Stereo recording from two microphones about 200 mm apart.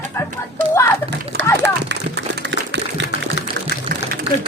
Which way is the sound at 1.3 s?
50° right (ahead or behind).